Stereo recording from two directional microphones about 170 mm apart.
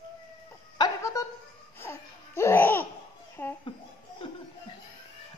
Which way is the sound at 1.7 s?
15° left (ahead or behind).